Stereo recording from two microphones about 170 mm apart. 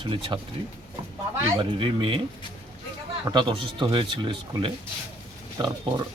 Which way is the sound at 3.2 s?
30° right (ahead or behind).